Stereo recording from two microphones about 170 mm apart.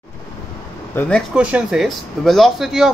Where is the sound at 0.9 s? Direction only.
5° left (ahead or behind).